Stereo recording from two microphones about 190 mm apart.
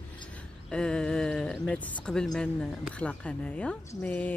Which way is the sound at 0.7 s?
5° left (ahead or behind).